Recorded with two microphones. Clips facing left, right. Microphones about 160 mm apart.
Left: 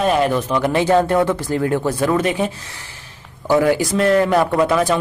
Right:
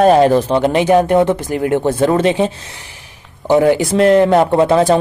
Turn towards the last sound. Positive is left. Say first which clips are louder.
# right 5 dB
turn(degrees=-30)  # may be behind; listen again after turning